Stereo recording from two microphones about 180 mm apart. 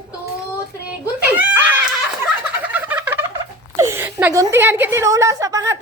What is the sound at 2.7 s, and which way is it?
Frog, 10° right (ahead or behind).